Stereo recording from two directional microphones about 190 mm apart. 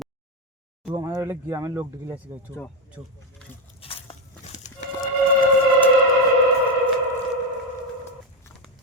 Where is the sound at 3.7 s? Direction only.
30° left (ahead or behind).